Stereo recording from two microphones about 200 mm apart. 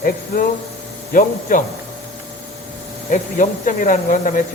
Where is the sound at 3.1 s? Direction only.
40° left (ahead or behind).